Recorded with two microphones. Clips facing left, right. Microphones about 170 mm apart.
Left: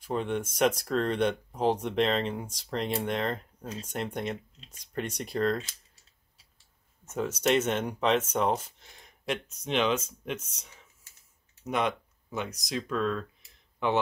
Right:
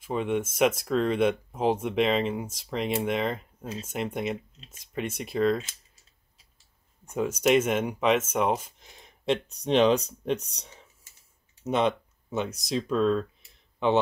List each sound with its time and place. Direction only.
0.0 s speech: 5° right (ahead or behind)
7.1 s speech: 10° right (ahead or behind); by 10.8 s 35° right (ahead or behind)
11.6 s a sound: 25° right (ahead or behind)
12.7 s speech: 25° right (ahead or behind)